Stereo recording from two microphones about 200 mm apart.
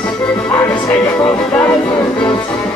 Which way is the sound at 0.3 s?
5° left (ahead or behind).